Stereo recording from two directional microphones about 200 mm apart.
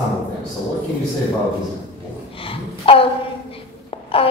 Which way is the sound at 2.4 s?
25° left (ahead or behind).